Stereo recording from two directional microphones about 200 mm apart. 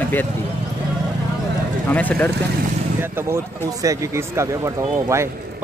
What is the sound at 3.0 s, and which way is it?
A man's voice, 10° right (ahead or behind).